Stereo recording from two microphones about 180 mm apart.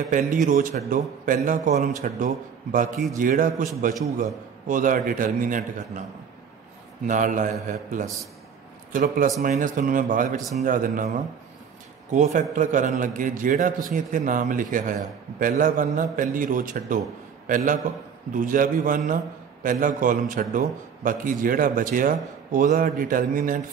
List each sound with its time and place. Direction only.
0.1 s a man's voice: 45° right (ahead or behind)
7.1 s a man's voice: 45° right (ahead or behind)
12.1 s a man's voice: 45° right (ahead or behind)